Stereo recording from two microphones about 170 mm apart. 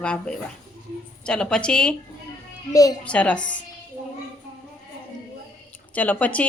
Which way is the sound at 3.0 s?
5° left (ahead or behind).